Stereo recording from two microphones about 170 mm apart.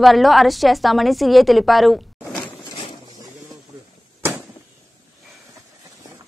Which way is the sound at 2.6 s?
30° left (ahead or behind).